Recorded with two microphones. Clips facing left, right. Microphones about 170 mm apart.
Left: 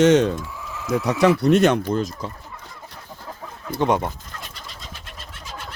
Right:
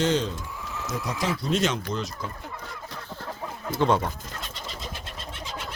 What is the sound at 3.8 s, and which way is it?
Speech, 20° left (ahead or behind).